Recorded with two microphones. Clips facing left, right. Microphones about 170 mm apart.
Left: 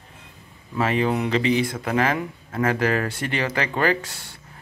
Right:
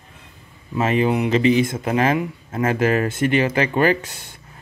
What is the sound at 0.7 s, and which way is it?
Speech, 20° right (ahead or behind).